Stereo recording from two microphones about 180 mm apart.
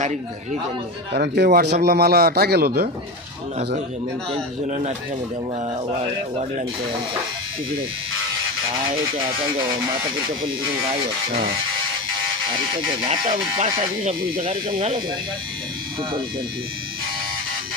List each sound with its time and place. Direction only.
1.1 s a man's voice: 65° right (ahead or behind)
4.3 s speech: 35° right (ahead or behind)
11.3 s a man's voice: 55° right (ahead or behind)
13.0 s speech: 25° right (ahead or behind)
14.0 s speech: 40° right (ahead or behind)